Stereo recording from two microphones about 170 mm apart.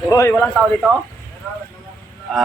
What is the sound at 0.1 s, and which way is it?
Speech, 15° left (ahead or behind).